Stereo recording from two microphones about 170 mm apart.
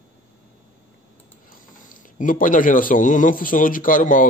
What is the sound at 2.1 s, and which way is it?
A man's voice, 50° left (ahead or behind).